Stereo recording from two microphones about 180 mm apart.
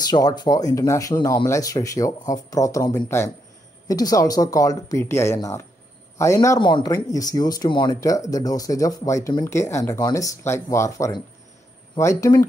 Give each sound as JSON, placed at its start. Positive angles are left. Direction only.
{"t": 0.1, "sound": "speech", "side_deg": 20}